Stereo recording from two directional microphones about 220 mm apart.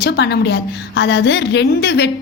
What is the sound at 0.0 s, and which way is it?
A woman's voice, 50° left (ahead or behind).